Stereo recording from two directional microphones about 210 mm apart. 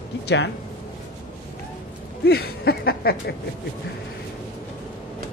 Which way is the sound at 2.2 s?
50° left (ahead or behind).